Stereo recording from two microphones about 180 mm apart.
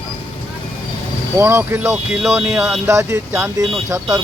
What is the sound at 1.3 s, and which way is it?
Speech, 15° right (ahead or behind).